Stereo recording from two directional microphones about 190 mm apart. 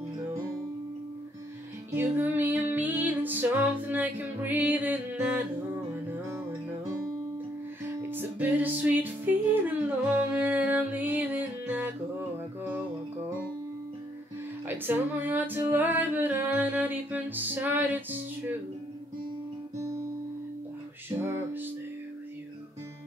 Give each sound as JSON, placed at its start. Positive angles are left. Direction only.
{"t": 1.9, "sound": "music", "side_deg": -10}
{"t": 8.1, "sound": "music", "side_deg": -10}
{"t": 14.8, "sound": "music", "side_deg": -10}